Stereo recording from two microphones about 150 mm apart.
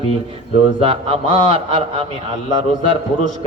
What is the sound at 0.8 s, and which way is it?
A man's voice, 40° right (ahead or behind).